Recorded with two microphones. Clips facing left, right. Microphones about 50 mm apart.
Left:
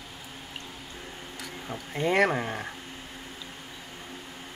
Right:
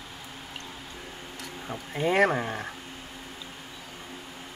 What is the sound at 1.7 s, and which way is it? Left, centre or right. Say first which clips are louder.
Speech: even; centre.